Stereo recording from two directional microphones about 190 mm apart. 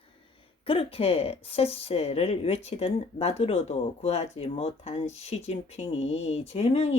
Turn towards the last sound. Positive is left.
turn(degrees=35)  # may be behind; listen again after turning